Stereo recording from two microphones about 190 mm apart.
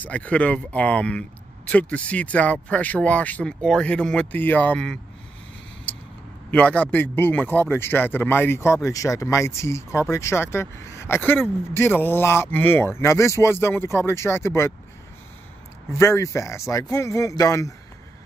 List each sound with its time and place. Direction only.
0.0 s speech: 5° left (ahead or behind)
6.5 s speech: 5° left (ahead or behind)
15.9 s speech: 15° left (ahead or behind)